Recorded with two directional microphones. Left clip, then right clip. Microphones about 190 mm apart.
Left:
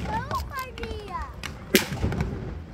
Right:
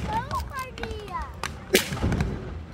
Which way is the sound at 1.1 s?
25° left (ahead or behind).